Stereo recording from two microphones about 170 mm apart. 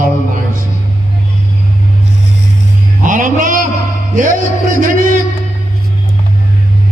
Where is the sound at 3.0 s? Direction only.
55° right (ahead or behind).